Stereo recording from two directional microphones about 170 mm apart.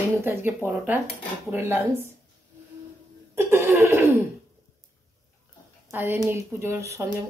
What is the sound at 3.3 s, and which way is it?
Laughter, 15° right (ahead or behind).